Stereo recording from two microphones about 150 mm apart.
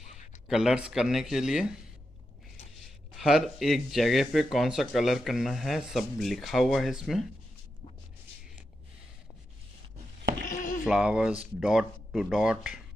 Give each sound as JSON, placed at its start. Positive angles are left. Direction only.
{"t": 0.5, "sound": "speech", "side_deg": -5}
{"t": 3.2, "sound": "speech", "side_deg": 0}
{"t": 10.5, "sound": "a sound", "side_deg": 60}
{"t": 10.9, "sound": "speech", "side_deg": -5}